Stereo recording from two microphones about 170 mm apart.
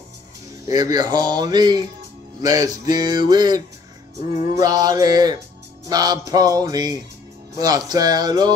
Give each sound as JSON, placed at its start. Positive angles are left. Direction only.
{"t": 0.7, "sound": "speech", "side_deg": -20}